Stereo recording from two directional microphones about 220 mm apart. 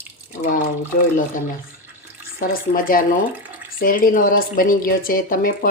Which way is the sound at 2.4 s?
40° left (ahead or behind).